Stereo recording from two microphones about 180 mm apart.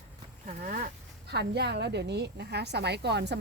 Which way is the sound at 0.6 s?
50° right (ahead or behind).